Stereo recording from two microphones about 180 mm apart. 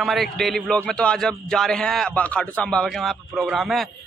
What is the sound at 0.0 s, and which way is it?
A man's voice, centre (ahead or behind).